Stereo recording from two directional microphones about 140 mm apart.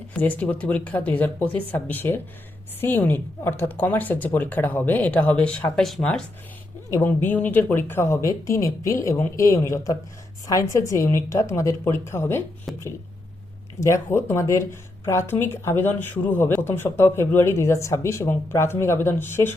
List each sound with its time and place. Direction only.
0.1 s speech: 10° left (ahead or behind)
12.7 s a sound: centre (ahead or behind)
13.7 s speech: 20° left (ahead or behind)